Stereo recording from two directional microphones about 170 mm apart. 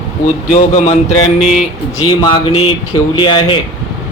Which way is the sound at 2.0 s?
30° left (ahead or behind).